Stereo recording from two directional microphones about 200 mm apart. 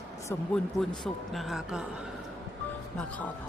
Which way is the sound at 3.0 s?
5° left (ahead or behind).